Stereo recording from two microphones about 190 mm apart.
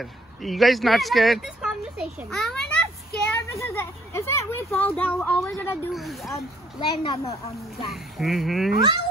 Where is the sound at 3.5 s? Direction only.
15° left (ahead or behind).